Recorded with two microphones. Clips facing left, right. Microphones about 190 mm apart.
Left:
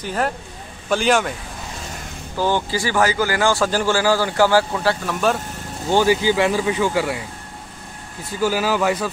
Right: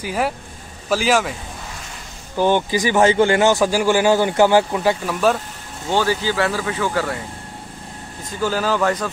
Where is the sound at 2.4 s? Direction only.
20° right (ahead or behind).